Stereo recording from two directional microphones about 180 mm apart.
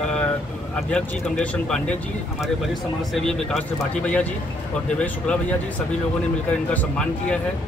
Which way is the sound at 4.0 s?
5° left (ahead or behind).